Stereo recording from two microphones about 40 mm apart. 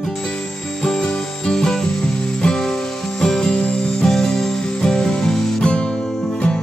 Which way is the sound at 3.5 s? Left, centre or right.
Left.